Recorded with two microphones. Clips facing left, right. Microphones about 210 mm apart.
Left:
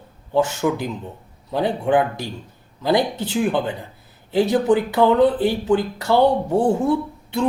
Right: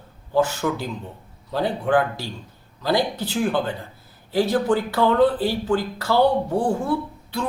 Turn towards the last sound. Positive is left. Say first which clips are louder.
# left 4 dB
turn(degrees=25)  # may be behind; listen again after turning